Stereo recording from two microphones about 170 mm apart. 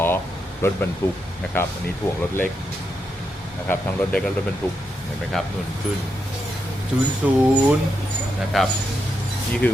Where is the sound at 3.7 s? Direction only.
5° left (ahead or behind).